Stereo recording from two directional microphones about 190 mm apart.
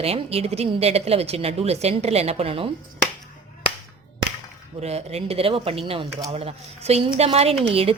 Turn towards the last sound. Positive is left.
turn(degrees=-30)  # may be behind; listen again after turning